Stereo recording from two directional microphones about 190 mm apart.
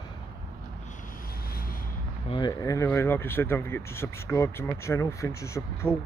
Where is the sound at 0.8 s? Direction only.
45° left (ahead or behind).